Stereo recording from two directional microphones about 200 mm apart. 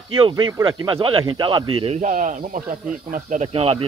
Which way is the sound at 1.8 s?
35° right (ahead or behind).